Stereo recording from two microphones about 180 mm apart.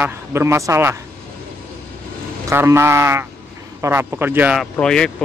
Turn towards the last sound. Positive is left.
turn(degrees=5)  # may be behind; listen again after turning